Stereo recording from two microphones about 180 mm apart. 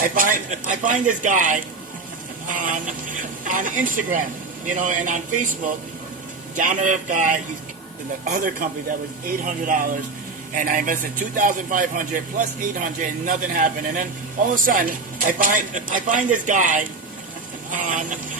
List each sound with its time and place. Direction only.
0.0 s speech: 50° right (ahead or behind)
6.6 s speech: 45° right (ahead or behind)